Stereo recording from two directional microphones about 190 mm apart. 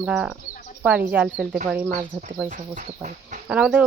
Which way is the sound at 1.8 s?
45° right (ahead or behind).